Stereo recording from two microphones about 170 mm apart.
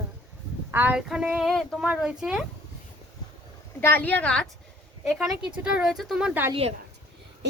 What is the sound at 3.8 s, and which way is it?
A woman's voice, 10° left (ahead or behind).